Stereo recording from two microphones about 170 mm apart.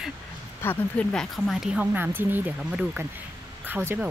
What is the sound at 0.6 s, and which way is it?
Speech, 10° left (ahead or behind).